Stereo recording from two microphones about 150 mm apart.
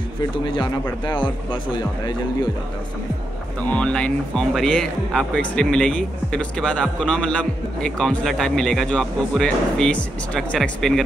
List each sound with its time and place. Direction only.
1.5 s speech: 30° left (ahead or behind)
3.6 s speech: 10° left (ahead or behind)